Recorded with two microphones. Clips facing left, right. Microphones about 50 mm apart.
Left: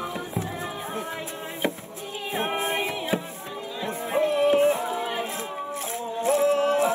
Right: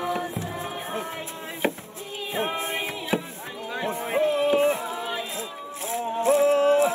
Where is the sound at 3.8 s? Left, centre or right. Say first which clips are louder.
Right 1 dB; right.